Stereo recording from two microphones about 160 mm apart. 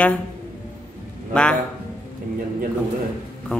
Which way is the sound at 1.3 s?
5° left (ahead or behind).